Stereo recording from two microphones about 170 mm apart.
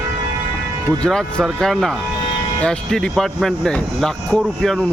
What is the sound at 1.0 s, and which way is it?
Speech, 5° left (ahead or behind).